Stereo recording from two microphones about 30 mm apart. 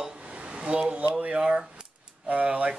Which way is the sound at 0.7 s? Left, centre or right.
Right.